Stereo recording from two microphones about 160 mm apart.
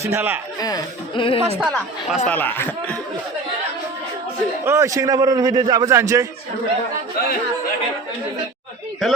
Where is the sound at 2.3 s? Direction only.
10° left (ahead or behind).